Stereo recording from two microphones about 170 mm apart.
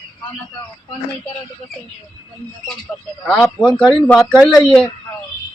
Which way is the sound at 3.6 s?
5° left (ahead or behind).